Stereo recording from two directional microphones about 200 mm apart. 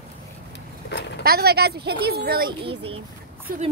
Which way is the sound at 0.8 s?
55° left (ahead or behind).